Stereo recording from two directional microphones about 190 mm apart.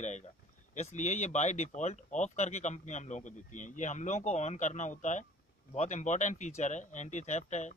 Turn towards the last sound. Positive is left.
turn(degrees=35)  # may be behind; listen again after turning